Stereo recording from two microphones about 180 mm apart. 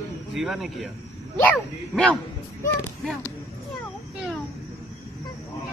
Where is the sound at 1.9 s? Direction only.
5° left (ahead or behind).